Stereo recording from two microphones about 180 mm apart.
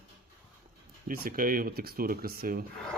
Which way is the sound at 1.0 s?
55° right (ahead or behind).